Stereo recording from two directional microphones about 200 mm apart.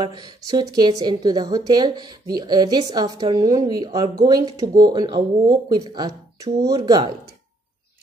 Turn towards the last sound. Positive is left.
turn(degrees=-20)  # may be behind; listen again after turning